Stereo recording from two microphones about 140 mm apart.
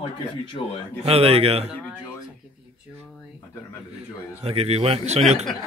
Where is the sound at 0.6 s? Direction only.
50° left (ahead or behind).